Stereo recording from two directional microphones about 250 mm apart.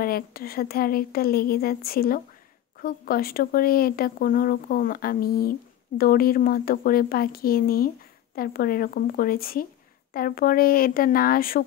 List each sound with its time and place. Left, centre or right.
0.0 s speech: left